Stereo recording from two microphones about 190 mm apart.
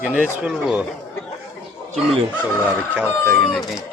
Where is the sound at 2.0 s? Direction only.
5° left (ahead or behind).